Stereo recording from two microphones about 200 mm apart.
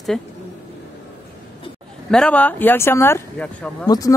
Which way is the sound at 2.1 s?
5° left (ahead or behind).